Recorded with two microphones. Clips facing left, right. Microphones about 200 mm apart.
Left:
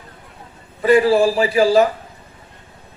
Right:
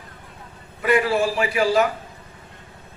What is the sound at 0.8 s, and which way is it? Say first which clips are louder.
A man's voice: left 6 dB; 30° left (ahead or behind).